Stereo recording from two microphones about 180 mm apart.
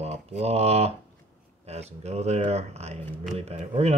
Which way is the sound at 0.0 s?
35° right (ahead or behind).